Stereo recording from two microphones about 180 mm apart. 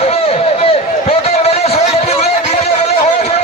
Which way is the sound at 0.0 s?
35° left (ahead or behind).